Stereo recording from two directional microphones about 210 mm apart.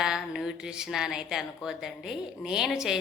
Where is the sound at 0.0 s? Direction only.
5° right (ahead or behind).